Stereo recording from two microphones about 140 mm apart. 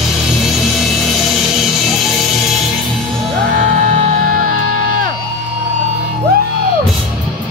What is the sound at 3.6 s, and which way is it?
Music, 70° right (ahead or behind).